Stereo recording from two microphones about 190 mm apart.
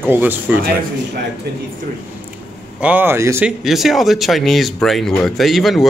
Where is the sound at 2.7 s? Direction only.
10° right (ahead or behind).